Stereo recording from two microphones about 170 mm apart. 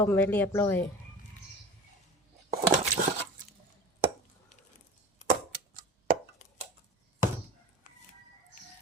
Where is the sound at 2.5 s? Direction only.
50° right (ahead or behind).